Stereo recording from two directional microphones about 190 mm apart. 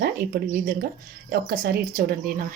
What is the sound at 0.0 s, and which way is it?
Speech, 50° right (ahead or behind).